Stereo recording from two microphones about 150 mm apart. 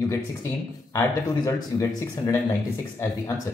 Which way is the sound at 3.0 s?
20° left (ahead or behind).